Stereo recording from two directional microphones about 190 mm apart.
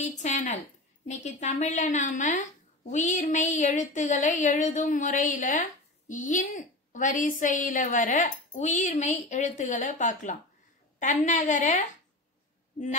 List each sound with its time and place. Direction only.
0.0 s a woman's voice: 40° left (ahead or behind)